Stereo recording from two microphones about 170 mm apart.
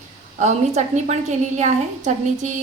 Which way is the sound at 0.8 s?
45° right (ahead or behind).